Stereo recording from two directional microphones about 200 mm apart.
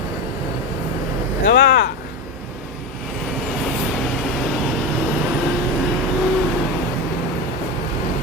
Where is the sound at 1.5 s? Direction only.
60° left (ahead or behind).